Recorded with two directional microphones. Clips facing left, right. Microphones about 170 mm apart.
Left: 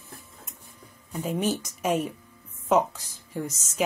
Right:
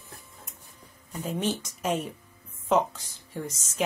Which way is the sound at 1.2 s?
5° left (ahead or behind).